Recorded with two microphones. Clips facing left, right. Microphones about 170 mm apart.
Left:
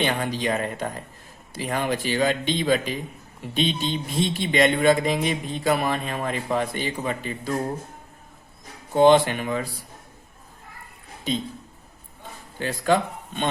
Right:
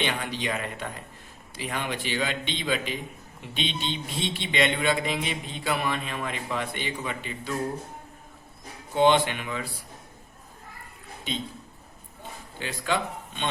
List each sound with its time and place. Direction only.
0.0 s a man's voice: 45° left (ahead or behind)
9.0 s a man's voice: 40° left (ahead or behind)
12.5 s speech: 45° left (ahead or behind)